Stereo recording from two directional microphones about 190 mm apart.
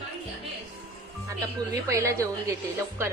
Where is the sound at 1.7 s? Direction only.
15° right (ahead or behind).